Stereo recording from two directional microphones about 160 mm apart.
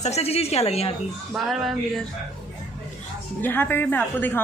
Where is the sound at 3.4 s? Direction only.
10° left (ahead or behind).